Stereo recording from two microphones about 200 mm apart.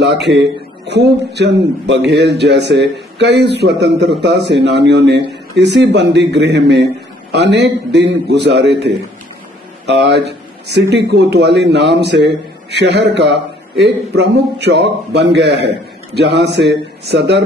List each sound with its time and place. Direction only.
0.3 s speech: 60° right (ahead or behind)